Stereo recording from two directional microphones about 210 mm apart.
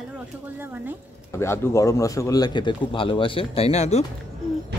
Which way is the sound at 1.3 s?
10° left (ahead or behind).